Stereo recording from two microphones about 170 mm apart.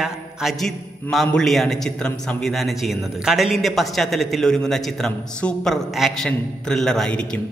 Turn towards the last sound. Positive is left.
turn(degrees=5)  # may be behind; listen again after turning